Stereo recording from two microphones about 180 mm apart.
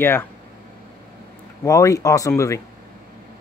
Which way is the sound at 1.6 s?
20° left (ahead or behind).